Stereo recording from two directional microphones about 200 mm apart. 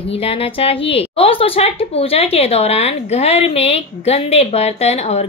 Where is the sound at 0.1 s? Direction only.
30° left (ahead or behind).